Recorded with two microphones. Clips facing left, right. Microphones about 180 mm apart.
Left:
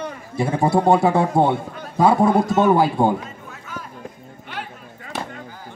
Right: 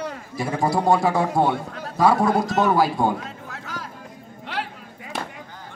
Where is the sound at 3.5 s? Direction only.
80° right.